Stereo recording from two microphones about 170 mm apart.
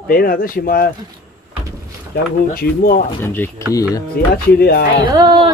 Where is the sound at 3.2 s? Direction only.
10° left (ahead or behind).